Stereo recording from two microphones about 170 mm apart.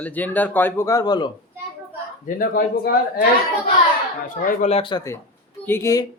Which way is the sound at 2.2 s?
55° left (ahead or behind).